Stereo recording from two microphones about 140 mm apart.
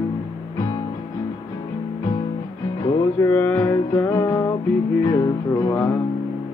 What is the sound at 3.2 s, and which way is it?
Music, 15° left (ahead or behind).